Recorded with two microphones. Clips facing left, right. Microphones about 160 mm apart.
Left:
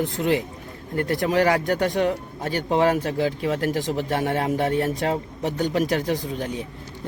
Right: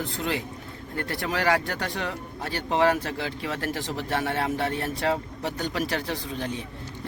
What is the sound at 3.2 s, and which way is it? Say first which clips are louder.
Speech: left 8 dB; 40° left (ahead or behind).